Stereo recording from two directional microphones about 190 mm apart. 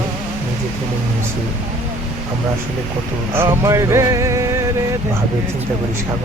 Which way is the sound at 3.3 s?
15° right (ahead or behind).